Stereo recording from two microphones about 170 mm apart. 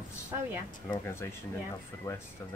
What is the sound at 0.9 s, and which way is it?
Speech, 15° left (ahead or behind).